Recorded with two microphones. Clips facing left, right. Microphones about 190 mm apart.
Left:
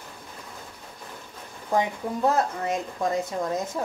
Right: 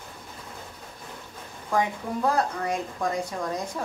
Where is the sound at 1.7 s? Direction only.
25° left (ahead or behind).